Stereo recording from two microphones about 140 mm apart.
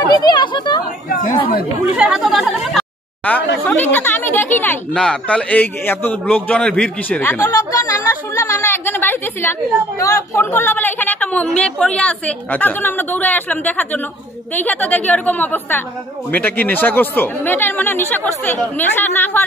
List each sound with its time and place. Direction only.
0.1 s speech: 30° left (ahead or behind)
1.0 s chatter: 70° left (ahead or behind)
2.0 s speech: 5° right (ahead or behind)
3.3 s speech: 10° left (ahead or behind)